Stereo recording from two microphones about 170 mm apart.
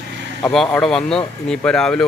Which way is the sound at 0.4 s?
5° left (ahead or behind).